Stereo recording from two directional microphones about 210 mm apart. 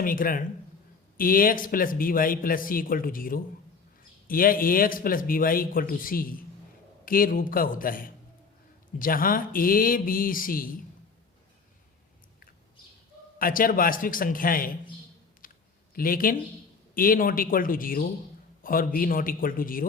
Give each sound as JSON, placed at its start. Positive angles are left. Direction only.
{"t": 0.0, "sound": "a man's voice", "side_deg": 40}
{"t": 13.4, "sound": "a man's voice", "side_deg": 40}
{"t": 15.4, "sound": "typing", "side_deg": 40}
{"t": 16.0, "sound": "a man's voice", "side_deg": 45}